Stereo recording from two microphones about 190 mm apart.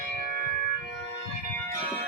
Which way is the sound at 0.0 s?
50° right (ahead or behind).